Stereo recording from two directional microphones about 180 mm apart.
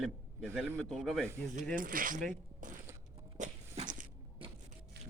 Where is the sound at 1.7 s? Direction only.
50° right (ahead or behind).